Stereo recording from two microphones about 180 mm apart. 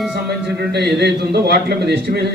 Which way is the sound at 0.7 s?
70° right (ahead or behind).